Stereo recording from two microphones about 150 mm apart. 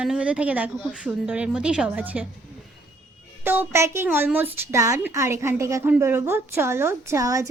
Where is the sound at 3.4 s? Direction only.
15° right (ahead or behind).